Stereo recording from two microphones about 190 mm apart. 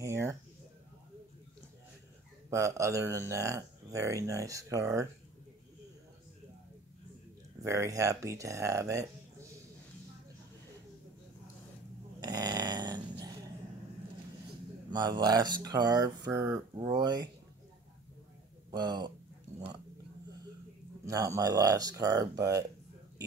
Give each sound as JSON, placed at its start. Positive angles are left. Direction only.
{"t": 0.0, "sound": "a sound", "side_deg": -15}
{"t": 2.5, "sound": "speech", "side_deg": -15}
{"t": 7.6, "sound": "speech", "side_deg": -15}
{"t": 12.2, "sound": "a sound", "side_deg": -20}
{"t": 14.9, "sound": "speech", "side_deg": -20}
{"t": 18.7, "sound": "speech", "side_deg": -20}
{"t": 21.0, "sound": "speech", "side_deg": -15}